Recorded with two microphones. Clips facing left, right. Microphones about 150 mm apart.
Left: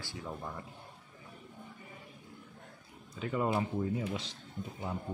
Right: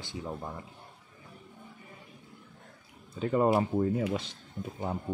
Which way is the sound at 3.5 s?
60° right (ahead or behind).